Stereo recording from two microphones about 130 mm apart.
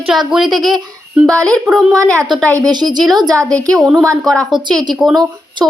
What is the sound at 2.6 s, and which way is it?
Speech, 30° right (ahead or behind).